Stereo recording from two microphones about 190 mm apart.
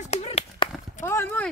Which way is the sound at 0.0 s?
35° left (ahead or behind).